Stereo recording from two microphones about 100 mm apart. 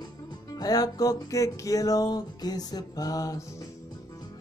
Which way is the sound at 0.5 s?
40° left (ahead or behind).